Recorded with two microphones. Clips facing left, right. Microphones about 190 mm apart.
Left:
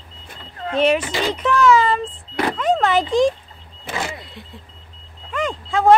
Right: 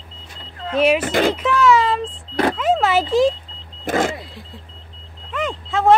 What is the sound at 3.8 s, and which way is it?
Vehicle, 50° right (ahead or behind).